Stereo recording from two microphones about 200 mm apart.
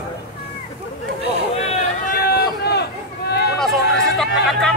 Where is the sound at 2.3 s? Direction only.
55° left (ahead or behind).